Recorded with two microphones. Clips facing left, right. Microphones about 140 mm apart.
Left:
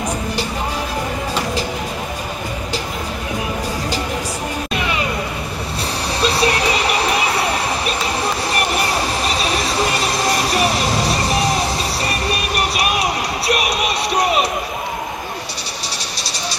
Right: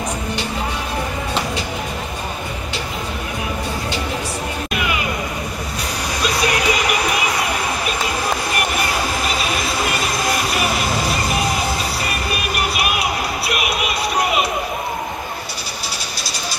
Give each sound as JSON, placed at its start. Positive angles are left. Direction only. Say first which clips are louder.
{"t": 6.2, "sound": "music", "louder": "left 2 dB", "side_deg": 30}